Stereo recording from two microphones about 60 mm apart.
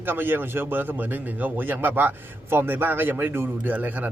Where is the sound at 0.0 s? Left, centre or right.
Right.